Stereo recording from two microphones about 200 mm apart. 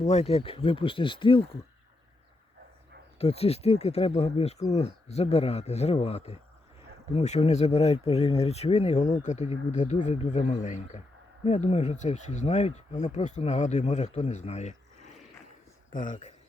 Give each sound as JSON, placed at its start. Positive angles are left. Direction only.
{"t": 0.0, "sound": "speech", "side_deg": 35}
{"t": 3.2, "sound": "speech", "side_deg": 30}
{"t": 15.9, "sound": "speech", "side_deg": 40}